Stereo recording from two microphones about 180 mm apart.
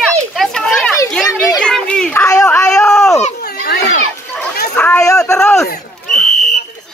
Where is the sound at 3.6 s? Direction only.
65° left (ahead or behind).